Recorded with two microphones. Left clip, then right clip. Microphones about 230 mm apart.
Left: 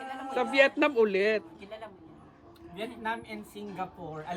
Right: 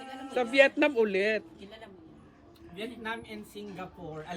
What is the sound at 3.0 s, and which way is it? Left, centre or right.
A woman's voice, left.